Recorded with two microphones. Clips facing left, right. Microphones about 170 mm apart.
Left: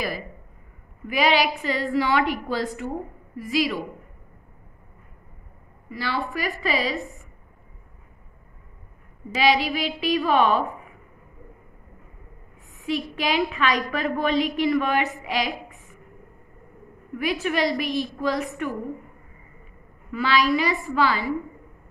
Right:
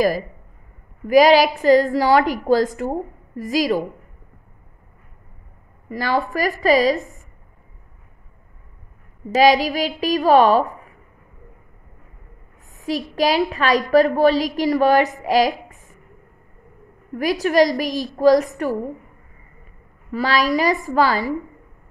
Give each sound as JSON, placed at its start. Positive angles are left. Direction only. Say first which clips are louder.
{"t": 1.0, "sound": "a woman's voice", "louder": "right 9 dB", "side_deg": -40}
{"t": 5.9, "sound": "a woman's voice", "louder": "right 7 dB", "side_deg": -45}
{"t": 9.3, "sound": "a woman's voice", "louder": "right 6 dB", "side_deg": -40}
{"t": 12.7, "sound": "a woman's voice", "louder": "right 4 dB", "side_deg": -40}
{"t": 17.2, "sound": "a woman's voice", "louder": "right 7 dB", "side_deg": -40}
{"t": 20.1, "sound": "a woman's voice", "louder": "right 2 dB", "side_deg": -40}